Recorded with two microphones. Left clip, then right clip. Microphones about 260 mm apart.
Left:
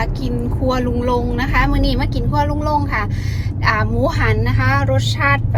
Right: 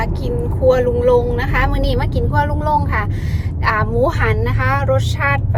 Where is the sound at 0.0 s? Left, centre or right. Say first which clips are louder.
Right 1 dB; centre.